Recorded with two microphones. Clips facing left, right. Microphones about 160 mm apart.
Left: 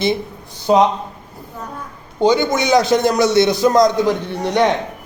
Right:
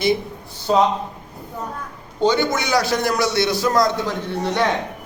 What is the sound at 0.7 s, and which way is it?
Speech, 15° left (ahead or behind).